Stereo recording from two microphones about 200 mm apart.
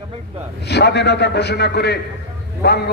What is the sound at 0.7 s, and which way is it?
A man's voice, 55° left (ahead or behind).